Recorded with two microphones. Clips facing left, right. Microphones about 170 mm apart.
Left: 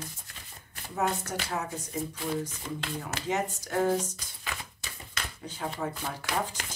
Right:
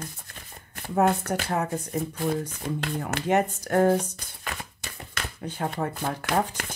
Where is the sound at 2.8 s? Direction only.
60° right (ahead or behind).